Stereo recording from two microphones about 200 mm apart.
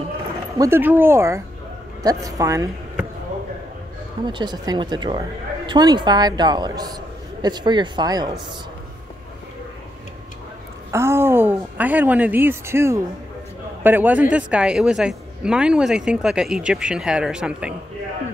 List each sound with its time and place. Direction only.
0.6 s speech: 10° right (ahead or behind)
4.3 s a woman's voice: 20° right (ahead or behind)
10.9 s a woman's voice: 15° right (ahead or behind)